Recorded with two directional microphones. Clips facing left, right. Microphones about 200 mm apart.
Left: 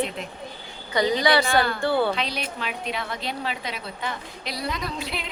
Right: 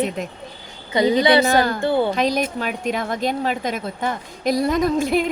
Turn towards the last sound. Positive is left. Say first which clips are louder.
# right 13 dB
turn(degrees=-45)  # may be behind; listen again after turning